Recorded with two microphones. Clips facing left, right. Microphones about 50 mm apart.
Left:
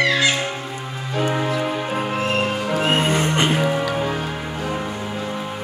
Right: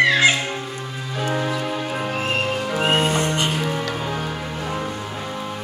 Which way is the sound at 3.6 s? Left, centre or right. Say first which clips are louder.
Left 4 dB; centre.